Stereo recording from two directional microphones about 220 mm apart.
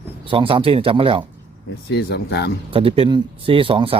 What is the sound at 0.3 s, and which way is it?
Speech, 25° right (ahead or behind).